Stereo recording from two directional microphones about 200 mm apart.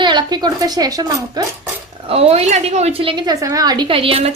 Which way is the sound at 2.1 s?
30° right (ahead or behind).